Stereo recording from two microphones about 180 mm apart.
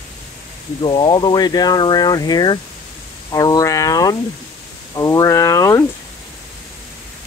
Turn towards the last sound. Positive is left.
turn(degrees=20)  # may be behind; listen again after turning